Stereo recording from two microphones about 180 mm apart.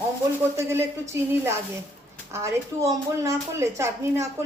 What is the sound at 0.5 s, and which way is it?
Speech, 15° right (ahead or behind).